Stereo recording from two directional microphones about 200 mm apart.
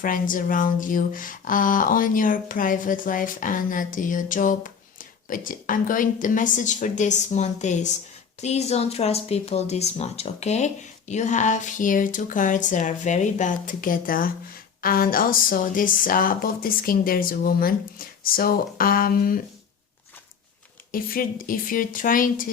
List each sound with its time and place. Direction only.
0.0 s speech: 40° left (ahead or behind)
20.9 s speech: 45° left (ahead or behind)